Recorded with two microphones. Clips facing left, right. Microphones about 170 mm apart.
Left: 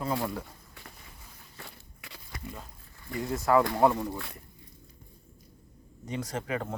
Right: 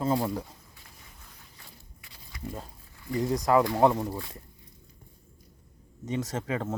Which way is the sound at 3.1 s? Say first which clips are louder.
Right 1 dB; 20° right (ahead or behind).